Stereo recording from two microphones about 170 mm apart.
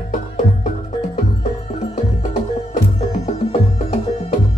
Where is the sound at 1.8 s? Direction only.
40° left (ahead or behind).